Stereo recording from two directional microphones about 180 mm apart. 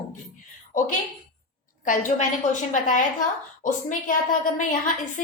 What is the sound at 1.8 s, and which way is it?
A woman's voice, 45° left (ahead or behind).